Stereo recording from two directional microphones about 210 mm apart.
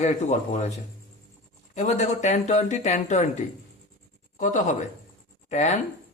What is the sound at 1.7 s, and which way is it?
A man's voice, 30° left (ahead or behind).